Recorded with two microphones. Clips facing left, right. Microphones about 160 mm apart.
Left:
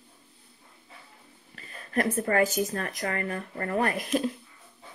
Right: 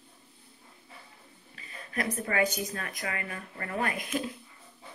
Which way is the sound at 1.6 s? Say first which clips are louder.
Left 6 dB; 50° left (ahead or behind).